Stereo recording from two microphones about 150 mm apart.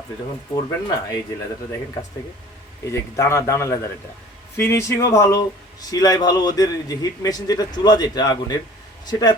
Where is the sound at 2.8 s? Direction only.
20° left (ahead or behind).